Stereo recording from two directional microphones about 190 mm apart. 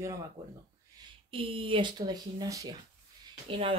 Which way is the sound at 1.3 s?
30° right (ahead or behind).